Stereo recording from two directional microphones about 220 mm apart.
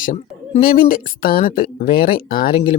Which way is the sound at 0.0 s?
40° left (ahead or behind).